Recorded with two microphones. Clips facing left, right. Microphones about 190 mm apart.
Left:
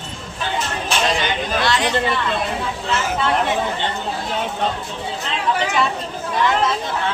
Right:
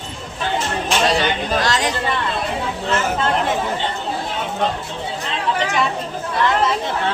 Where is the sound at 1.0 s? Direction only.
40° right (ahead or behind).